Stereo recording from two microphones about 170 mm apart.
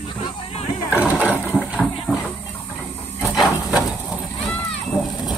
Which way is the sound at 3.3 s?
Centre (ahead or behind).